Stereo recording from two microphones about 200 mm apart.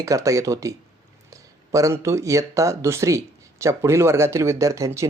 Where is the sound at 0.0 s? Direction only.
15° right (ahead or behind).